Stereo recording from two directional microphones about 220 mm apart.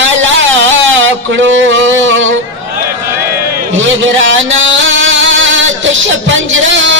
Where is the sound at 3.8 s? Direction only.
60° right (ahead or behind).